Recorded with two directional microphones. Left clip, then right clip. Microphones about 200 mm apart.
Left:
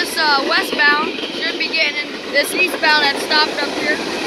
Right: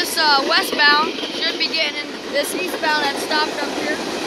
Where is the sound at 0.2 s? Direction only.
15° right (ahead or behind).